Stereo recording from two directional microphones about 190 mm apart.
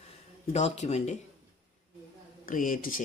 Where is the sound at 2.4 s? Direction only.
45° left (ahead or behind).